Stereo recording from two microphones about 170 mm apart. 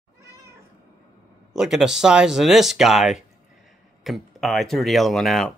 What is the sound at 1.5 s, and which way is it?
Speech, 5° right (ahead or behind).